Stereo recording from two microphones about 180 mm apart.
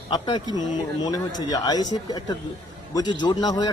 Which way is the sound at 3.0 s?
25° left (ahead or behind).